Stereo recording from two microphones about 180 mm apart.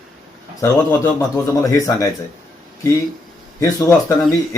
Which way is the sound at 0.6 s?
15° left (ahead or behind).